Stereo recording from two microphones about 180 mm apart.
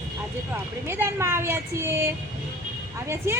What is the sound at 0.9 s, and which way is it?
Speech, 15° right (ahead or behind).